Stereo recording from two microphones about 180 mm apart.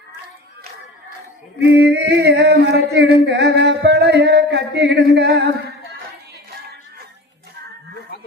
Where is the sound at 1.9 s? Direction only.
75° right (ahead or behind).